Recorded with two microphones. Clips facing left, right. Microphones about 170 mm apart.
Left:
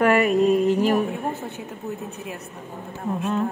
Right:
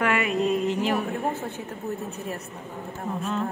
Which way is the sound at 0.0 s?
45° left (ahead or behind).